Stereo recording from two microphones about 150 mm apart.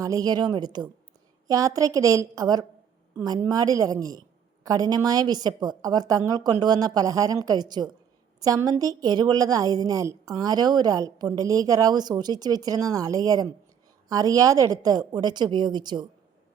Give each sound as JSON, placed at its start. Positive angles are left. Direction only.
{"t": 0.0, "sound": "a woman's voice", "side_deg": -25}